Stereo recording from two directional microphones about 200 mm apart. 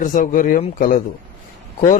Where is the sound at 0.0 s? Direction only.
40° left (ahead or behind).